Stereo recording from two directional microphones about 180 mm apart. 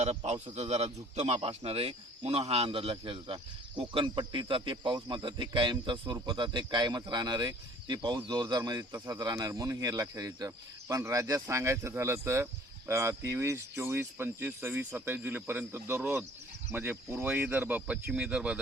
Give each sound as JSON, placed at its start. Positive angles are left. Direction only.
{"t": 0.0, "sound": "a man's voice", "side_deg": -35}